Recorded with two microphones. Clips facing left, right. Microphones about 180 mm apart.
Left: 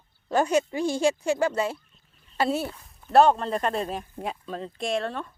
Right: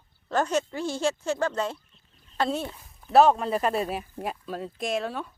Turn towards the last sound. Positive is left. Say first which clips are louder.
# left 1 dB
turn(degrees=-5)  # may be behind; listen again after turning